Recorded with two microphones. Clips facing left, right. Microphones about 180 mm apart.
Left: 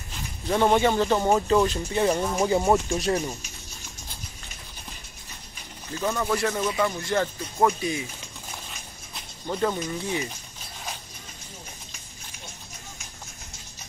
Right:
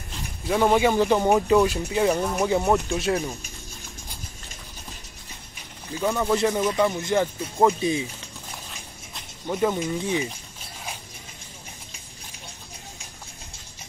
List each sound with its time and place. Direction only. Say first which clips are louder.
0.5 s speech: right 1 dB; 5° right (ahead or behind)
6.1 s speech: right 5 dB; 20° right (ahead or behind)
9.5 s speech: right 3 dB; 10° right (ahead or behind)